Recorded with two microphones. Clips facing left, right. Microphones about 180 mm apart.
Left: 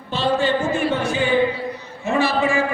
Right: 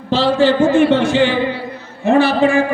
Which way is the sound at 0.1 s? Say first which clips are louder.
Right 6 dB; 90° right.